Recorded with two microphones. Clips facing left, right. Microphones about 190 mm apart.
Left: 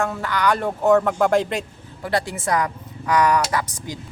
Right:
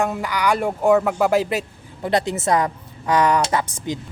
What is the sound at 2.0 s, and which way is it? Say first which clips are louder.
Speech: right 3 dB; 20° right (ahead or behind).